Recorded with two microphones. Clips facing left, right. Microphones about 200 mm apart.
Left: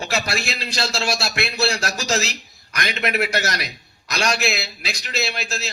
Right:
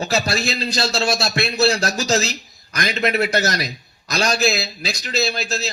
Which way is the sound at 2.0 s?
35° right (ahead or behind).